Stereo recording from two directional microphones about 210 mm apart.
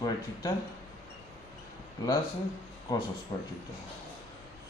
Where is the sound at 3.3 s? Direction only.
25° left (ahead or behind).